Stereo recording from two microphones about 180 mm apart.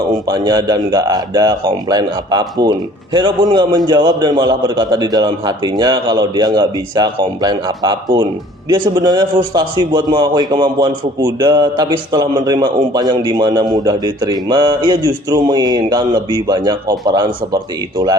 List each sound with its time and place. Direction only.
0.3 s a man's voice: 25° right (ahead or behind)